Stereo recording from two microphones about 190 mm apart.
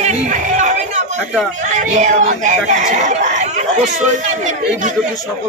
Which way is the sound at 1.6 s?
40° right (ahead or behind).